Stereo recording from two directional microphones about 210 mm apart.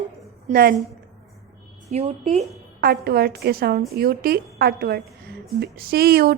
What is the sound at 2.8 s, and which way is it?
A woman's voice, 50° right (ahead or behind).